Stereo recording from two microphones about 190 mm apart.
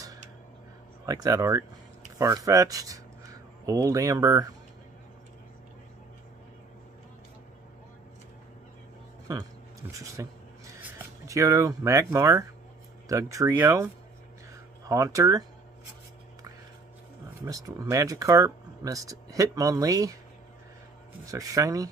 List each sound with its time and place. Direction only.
1.0 s speech: 20° right (ahead or behind)
9.9 s speech: 15° right (ahead or behind)
14.9 s speech: 15° right (ahead or behind)
17.5 s speech: 20° right (ahead or behind)
21.3 s speech: 20° right (ahead or behind)